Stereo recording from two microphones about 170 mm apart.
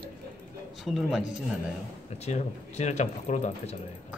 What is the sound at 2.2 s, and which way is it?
Speech, 40° left (ahead or behind).